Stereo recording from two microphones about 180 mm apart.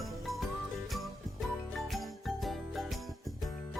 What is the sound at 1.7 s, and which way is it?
Jingle bell, centre (ahead or behind).